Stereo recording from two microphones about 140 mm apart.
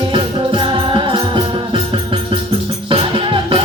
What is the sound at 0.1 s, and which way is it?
Music, 35° right (ahead or behind).